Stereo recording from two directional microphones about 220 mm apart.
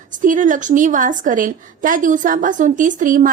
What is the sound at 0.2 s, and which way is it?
A woman's voice, 35° right (ahead or behind).